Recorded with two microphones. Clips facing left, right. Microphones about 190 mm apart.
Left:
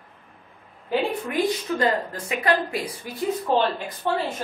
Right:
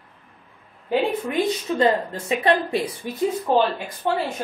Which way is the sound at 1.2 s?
25° right (ahead or behind).